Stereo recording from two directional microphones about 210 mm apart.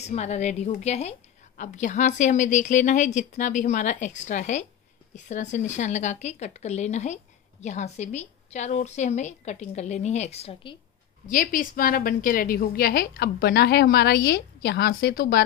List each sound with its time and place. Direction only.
0.0 s a woman's voice: 30° left (ahead or behind)
11.2 s a woman's voice: 40° left (ahead or behind)